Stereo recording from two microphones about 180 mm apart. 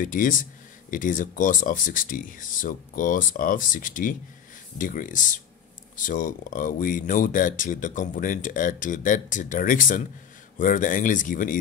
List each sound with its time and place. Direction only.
0.0 s speech: 50° left (ahead or behind)